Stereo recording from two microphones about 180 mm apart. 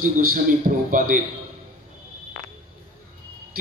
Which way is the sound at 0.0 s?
55° right (ahead or behind).